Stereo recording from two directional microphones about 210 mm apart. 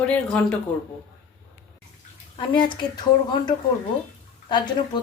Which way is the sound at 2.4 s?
20° left (ahead or behind).